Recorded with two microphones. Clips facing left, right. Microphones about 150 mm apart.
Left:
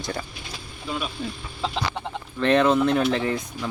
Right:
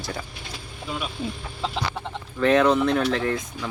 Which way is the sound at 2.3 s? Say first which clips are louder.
Even; centre (ahead or behind).